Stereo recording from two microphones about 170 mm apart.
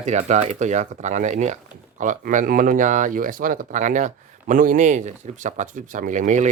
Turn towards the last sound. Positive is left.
turn(degrees=-45)  # may be behind; listen again after turning